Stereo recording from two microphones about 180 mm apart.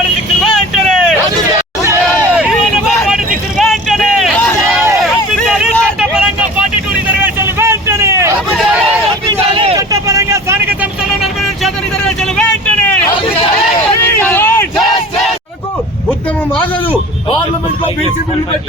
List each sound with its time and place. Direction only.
0.4 s vehicle: 5° left (ahead or behind)
3.6 s vehicle: centre (ahead or behind); by 8.3 s 15° right (ahead or behind)
8.5 s a sound: 5° right (ahead or behind)
9.7 s vehicle: 20° right (ahead or behind)
11.2 s vehicle: centre (ahead or behind)
14.0 s hubbub: 10° left (ahead or behind)